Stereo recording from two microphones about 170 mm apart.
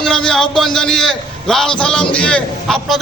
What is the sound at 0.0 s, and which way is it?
A man's voice, 5° left (ahead or behind).